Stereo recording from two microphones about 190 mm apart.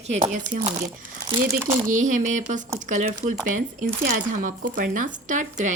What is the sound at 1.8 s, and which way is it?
A woman's voice, 45° right (ahead or behind).